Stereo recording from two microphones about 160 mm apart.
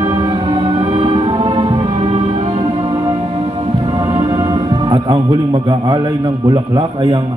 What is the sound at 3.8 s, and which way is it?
Speech, 25° right (ahead or behind).